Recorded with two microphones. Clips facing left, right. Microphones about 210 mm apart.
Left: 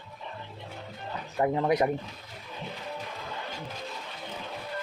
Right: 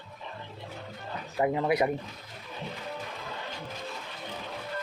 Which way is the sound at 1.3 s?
10° right (ahead or behind).